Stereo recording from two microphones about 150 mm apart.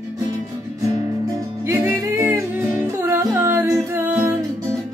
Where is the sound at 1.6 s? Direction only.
15° right (ahead or behind).